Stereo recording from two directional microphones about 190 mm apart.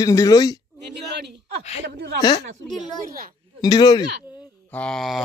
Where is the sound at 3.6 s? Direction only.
20° left (ahead or behind).